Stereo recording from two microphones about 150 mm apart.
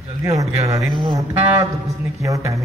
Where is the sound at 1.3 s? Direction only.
15° right (ahead or behind).